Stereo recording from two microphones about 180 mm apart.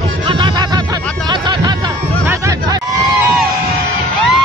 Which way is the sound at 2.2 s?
15° right (ahead or behind).